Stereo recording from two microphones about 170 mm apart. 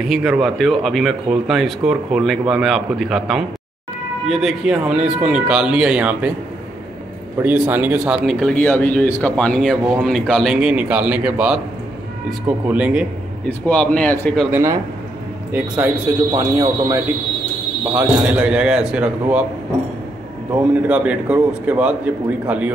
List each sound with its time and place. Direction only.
0.1 s speech: centre (ahead or behind)
7.4 s a man's voice: 10° right (ahead or behind)
13.5 s a man's voice: 10° left (ahead or behind)
14.5 s a man's voice: 15° right (ahead or behind)
16.3 s speech: 25° right (ahead or behind)
17.9 s a man's voice: 10° right (ahead or behind)
20.9 s a man's voice: 10° right (ahead or behind)